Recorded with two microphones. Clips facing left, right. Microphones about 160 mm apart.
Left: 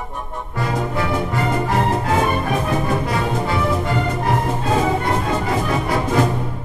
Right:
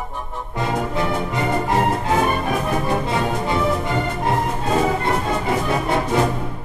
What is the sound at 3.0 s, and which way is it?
Music, 20° right (ahead or behind).